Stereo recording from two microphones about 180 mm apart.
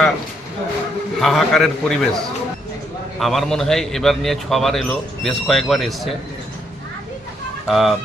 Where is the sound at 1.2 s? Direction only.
Centre (ahead or behind).